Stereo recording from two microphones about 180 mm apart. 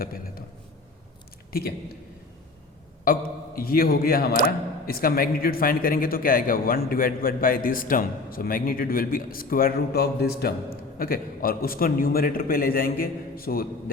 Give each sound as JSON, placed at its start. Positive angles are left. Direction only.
{"t": 0.0, "sound": "a man's voice", "side_deg": 55}
{"t": 3.0, "sound": "a man's voice", "side_deg": 55}